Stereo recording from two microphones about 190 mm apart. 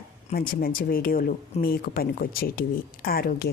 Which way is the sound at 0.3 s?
50° left (ahead or behind).